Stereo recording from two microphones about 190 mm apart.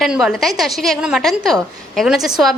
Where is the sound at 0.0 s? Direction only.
Centre (ahead or behind).